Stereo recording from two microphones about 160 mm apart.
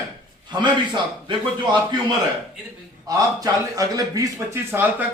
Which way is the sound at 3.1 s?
20° right (ahead or behind).